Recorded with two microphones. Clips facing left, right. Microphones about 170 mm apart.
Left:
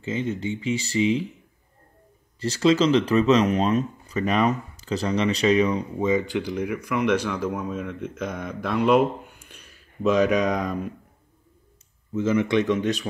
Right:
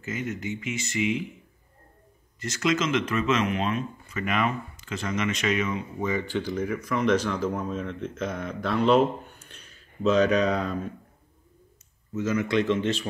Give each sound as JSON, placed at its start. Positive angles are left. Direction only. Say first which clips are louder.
{"t": 0.0, "sound": "speech", "louder": "left 5 dB", "side_deg": 30}
{"t": 2.4, "sound": "speech", "louder": "left 7 dB", "side_deg": 30}
{"t": 5.9, "sound": "speech", "louder": "left 4 dB", "side_deg": 20}
{"t": 12.2, "sound": "speech", "louder": "left 3 dB", "side_deg": 30}